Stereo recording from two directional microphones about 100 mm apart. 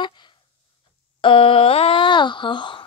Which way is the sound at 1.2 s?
60° left (ahead or behind).